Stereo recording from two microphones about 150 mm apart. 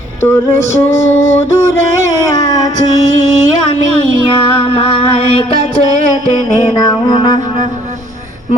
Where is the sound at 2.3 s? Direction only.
25° left (ahead or behind).